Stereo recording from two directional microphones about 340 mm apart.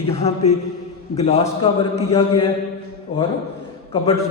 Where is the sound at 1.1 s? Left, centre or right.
Centre.